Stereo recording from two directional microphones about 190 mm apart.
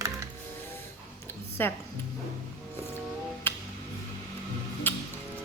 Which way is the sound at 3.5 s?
10° left (ahead or behind).